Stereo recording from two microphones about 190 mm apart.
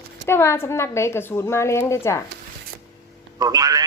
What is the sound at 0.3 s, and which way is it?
Speech, 10° left (ahead or behind).